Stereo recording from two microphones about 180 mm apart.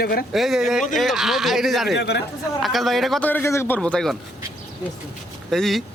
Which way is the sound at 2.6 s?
Centre (ahead or behind).